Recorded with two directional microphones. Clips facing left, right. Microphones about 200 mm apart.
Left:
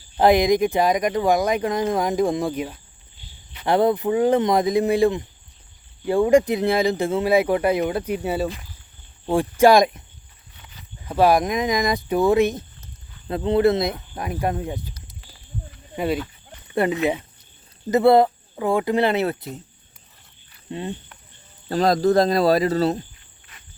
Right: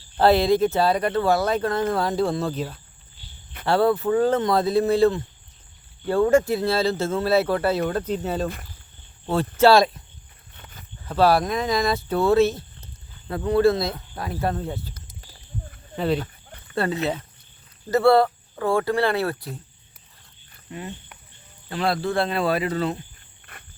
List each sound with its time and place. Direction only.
0.2 s speech: 15° left (ahead or behind)
10.6 s a sound: 50° right (ahead or behind)
11.0 s speech: 15° left (ahead or behind)
16.6 s speech: 15° left (ahead or behind)
20.7 s speech: 25° left (ahead or behind)
21.7 s speech: 40° left (ahead or behind)
23.5 s insect: 60° right (ahead or behind)